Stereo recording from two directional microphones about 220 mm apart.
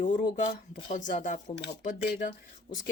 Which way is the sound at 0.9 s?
35° left (ahead or behind).